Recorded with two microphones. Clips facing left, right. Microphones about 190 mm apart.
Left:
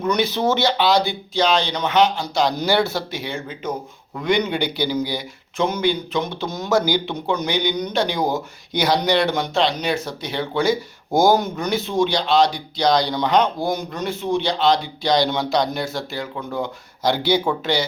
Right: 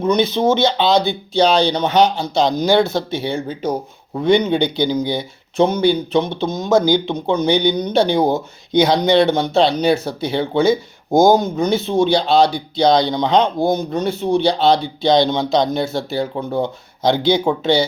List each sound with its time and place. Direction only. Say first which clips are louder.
0.0 s speech: right 4 dB; 25° right (ahead or behind)